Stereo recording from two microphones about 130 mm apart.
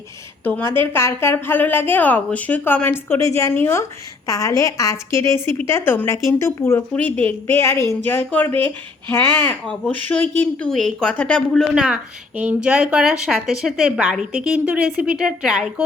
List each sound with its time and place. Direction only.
0.4 s a woman's voice: 15° left (ahead or behind)
11.7 s a woman's voice: 5° right (ahead or behind)